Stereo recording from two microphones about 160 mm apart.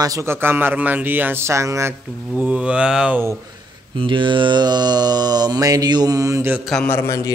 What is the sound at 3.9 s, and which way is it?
Speech, 30° right (ahead or behind).